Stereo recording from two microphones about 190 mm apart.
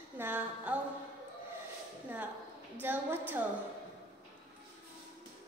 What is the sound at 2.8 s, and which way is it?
Speech, 10° right (ahead or behind).